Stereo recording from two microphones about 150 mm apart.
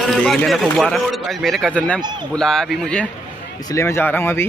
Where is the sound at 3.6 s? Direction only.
15° left (ahead or behind).